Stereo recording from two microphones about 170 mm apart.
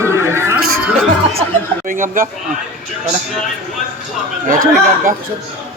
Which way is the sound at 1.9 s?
50° right (ahead or behind).